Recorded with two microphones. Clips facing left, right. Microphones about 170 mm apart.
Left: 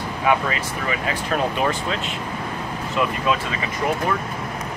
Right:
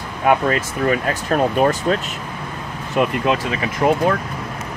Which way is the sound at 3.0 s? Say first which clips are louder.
Right 4 dB; 60° right (ahead or behind).